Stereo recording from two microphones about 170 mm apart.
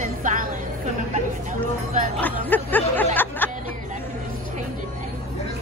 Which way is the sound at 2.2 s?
10° left (ahead or behind).